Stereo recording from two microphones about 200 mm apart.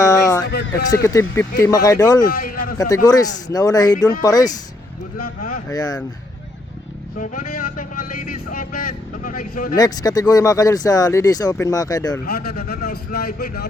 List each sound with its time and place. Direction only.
0.0 s a sound: 15° left (ahead or behind)
1.0 s speech: 15° left (ahead or behind)
2.2 s speech: 45° left (ahead or behind)
2.7 s speech: 20° left (ahead or behind)
5.6 s speech: 20° left (ahead or behind)
7.2 s a man's voice: 45° left (ahead or behind)
9.7 s speech: 20° left (ahead or behind)
12.2 s a man's voice: 50° left (ahead or behind)